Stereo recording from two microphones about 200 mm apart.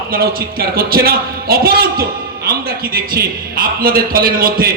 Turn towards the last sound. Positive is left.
turn(degrees=-45)  # may be behind; listen again after turning